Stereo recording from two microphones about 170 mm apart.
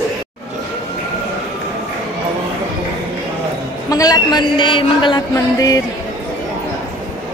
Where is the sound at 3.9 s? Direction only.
20° left (ahead or behind).